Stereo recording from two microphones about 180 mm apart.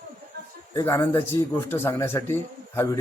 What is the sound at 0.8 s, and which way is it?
Speech, 15° left (ahead or behind).